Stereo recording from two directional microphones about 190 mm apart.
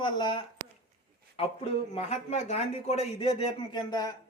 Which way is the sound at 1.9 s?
35° left (ahead or behind).